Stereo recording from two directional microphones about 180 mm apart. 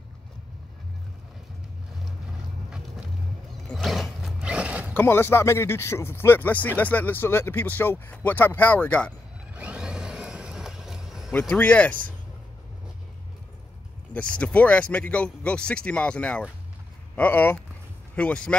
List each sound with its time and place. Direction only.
3.7 s a sound: centre (ahead or behind)
4.9 s speech: 15° left (ahead or behind)
9.5 s vehicle: 5° right (ahead or behind)
11.3 s speech: 10° left (ahead or behind)
14.1 s speech: 5° left (ahead or behind)